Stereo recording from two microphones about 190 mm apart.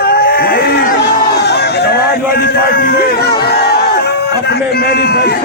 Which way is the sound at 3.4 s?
55° left (ahead or behind).